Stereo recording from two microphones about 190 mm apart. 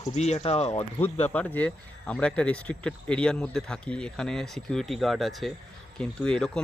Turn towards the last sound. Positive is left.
turn(degrees=5)  # may be behind; listen again after turning